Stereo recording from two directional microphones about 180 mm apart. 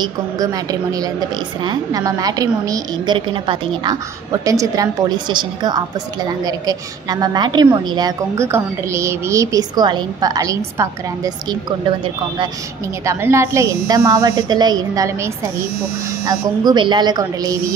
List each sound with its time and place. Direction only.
0.0 s a woman's voice: 20° right (ahead or behind)
13.0 s a woman's voice: 15° right (ahead or behind)